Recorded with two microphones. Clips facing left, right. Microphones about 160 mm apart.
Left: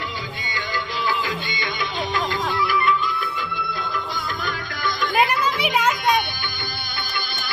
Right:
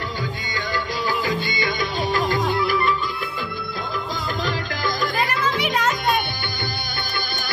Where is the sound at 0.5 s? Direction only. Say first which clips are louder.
Right 2 dB; 40° right (ahead or behind).